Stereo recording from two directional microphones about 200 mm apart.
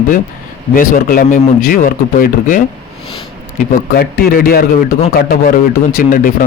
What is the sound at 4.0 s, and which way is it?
Speech, 50° left (ahead or behind).